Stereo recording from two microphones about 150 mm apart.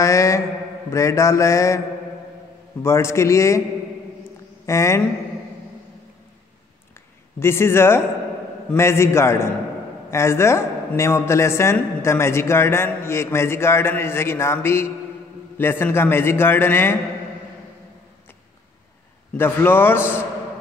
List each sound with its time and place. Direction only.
0.0 s mantra: 20° left (ahead or behind)
2.8 s mantra: 20° left (ahead or behind)
4.6 s mantra: 20° left (ahead or behind)
7.3 s a man's voice: 15° left (ahead or behind)
19.3 s a man's voice: 15° left (ahead or behind)